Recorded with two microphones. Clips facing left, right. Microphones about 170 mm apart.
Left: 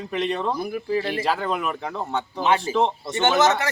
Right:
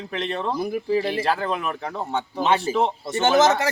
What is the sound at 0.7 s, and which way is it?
Speech, 25° right (ahead or behind).